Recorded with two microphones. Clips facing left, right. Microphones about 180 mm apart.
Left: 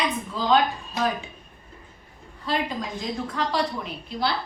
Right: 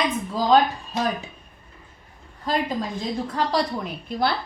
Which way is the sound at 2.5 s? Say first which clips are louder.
Right 3 dB; 45° right (ahead or behind).